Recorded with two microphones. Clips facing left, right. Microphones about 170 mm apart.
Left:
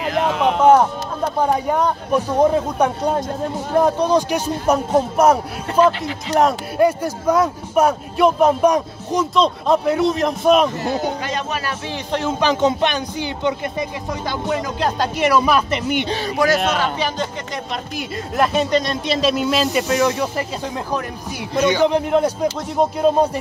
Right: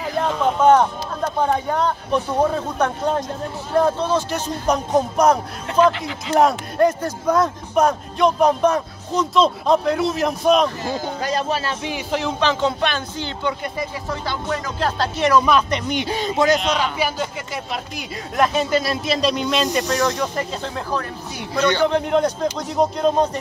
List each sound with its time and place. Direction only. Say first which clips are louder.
0.0 s a sound: left 2 dB; 80° left
1.4 s speech: left 2 dB; 10° left (ahead or behind)
6.8 s speech: left 1 dB; 10° left (ahead or behind)
9.3 s speech: right 1 dB; centre (ahead or behind)
10.8 s speech: left 4 dB; 70° left (ahead or behind)
11.2 s speech: right 2 dB; 35° right (ahead or behind)
11.9 s speech: left 2 dB; 5° right (ahead or behind)
12.4 s speech: left 4 dB; 15° left (ahead or behind)
16.1 s speech: right 3 dB; 20° right (ahead or behind)
17.9 s speech: left 2 dB; centre (ahead or behind)